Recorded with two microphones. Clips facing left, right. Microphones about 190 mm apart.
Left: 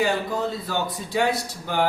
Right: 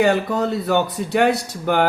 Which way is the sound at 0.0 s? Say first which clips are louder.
Right 6 dB; 70° right (ahead or behind).